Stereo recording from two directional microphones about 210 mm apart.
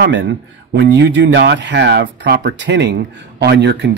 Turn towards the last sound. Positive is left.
turn(degrees=-55)  # may be behind; listen again after turning